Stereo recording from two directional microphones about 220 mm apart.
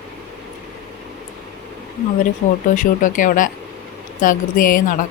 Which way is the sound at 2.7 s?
35° left (ahead or behind).